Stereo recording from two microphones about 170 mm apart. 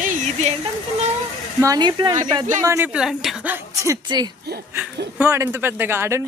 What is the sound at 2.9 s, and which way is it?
Speech, 5° right (ahead or behind).